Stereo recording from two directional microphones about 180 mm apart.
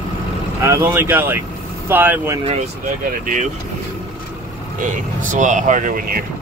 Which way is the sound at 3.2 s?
45° right (ahead or behind).